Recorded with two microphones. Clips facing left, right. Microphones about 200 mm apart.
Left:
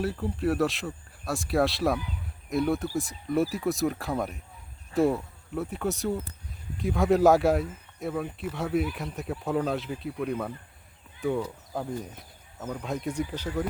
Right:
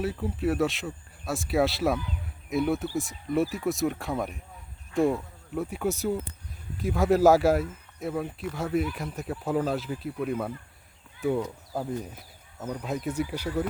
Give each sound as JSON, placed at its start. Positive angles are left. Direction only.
{"t": 0.0, "sound": "speech", "side_deg": 0}